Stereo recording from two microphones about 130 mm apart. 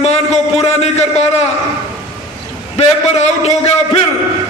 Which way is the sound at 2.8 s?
55° left (ahead or behind).